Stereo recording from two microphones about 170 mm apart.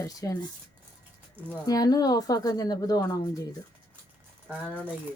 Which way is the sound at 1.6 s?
20° left (ahead or behind).